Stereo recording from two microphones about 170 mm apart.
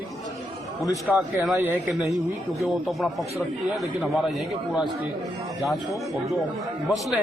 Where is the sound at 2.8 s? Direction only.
Centre (ahead or behind).